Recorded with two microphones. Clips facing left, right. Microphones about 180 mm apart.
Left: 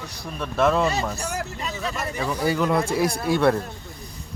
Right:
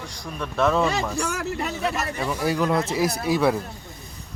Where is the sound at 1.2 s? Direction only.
80° right.